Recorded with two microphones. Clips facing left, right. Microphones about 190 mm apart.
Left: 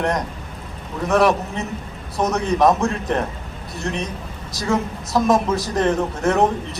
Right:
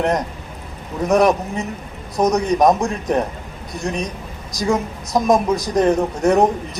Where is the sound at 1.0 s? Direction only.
20° right (ahead or behind).